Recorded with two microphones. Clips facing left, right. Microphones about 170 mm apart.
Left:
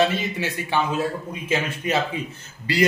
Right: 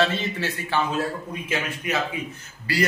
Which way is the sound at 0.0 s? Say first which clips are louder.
Left 2 dB; 15° left (ahead or behind).